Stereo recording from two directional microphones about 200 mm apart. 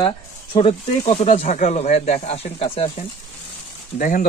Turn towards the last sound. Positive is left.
turn(degrees=40)  # may be behind; listen again after turning